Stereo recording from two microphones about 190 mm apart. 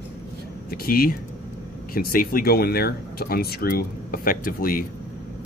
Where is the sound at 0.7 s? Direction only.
50° left (ahead or behind).